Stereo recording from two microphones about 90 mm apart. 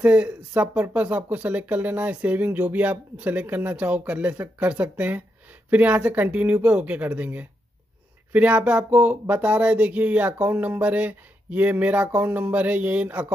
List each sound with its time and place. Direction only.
0.0 s speech: 15° right (ahead or behind)